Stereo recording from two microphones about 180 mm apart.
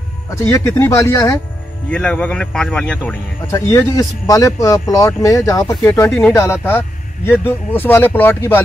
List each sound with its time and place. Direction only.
0.3 s speech: 15° left (ahead or behind)
1.9 s speech: 5° left (ahead or behind)